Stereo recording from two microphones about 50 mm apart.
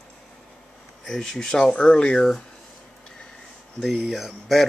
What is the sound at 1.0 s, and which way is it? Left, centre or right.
Speech, centre.